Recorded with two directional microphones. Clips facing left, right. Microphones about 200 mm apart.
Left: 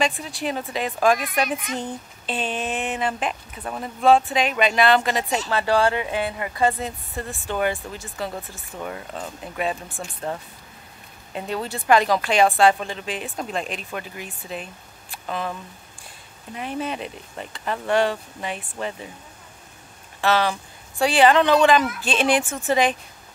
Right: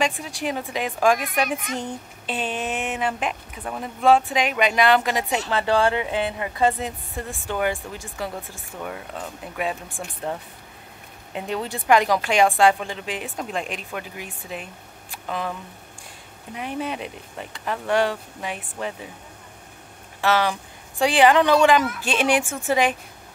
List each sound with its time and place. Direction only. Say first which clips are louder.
0.0 s a woman's voice: even; 10° right (ahead or behind)
9.6 s a woman's voice: left 1 dB; 10° right (ahead or behind)
11.3 s a woman's voice: even; 15° right (ahead or behind)
16.5 s a woman's voice: even; 10° right (ahead or behind)
20.2 s a sound: even; 10° right (ahead or behind)
21.0 s a woman's voice: even; 15° right (ahead or behind)